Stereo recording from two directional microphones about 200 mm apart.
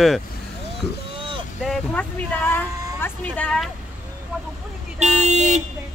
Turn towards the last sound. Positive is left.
turn(degrees=-35)  # may be behind; listen again after turning